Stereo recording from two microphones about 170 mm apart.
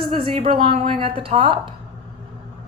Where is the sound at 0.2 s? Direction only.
35° right (ahead or behind).